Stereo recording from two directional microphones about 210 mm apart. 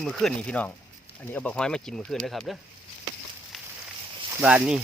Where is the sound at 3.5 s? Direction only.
Centre (ahead or behind).